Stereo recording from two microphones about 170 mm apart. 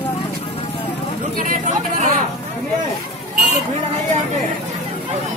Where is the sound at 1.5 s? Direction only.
45° right (ahead or behind).